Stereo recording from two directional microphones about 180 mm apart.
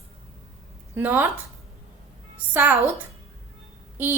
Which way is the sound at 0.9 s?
10° right (ahead or behind).